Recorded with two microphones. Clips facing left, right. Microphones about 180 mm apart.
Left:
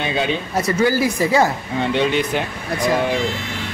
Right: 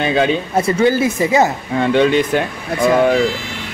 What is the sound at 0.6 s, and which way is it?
Speech, 25° right (ahead or behind).